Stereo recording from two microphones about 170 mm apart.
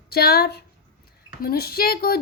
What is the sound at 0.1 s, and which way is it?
A woman's voice, 65° left (ahead or behind).